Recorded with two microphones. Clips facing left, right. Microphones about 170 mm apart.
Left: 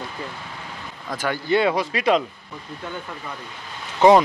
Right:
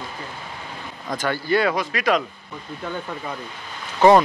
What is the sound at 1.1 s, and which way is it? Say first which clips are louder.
Speech: right 1 dB; 10° left (ahead or behind).